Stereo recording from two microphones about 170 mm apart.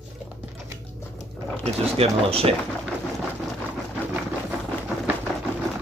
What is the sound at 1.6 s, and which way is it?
Speech, 35° right (ahead or behind).